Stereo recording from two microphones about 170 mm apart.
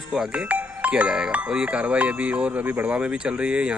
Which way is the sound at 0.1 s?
5° right (ahead or behind).